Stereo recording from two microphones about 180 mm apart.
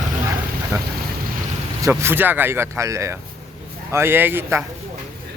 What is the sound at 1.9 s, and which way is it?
Speech, 10° right (ahead or behind).